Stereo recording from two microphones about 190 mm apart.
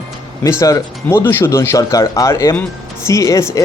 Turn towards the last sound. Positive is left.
turn(degrees=15)  # may be behind; listen again after turning